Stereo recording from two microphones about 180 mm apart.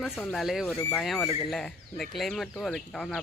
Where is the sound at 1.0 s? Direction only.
Centre (ahead or behind).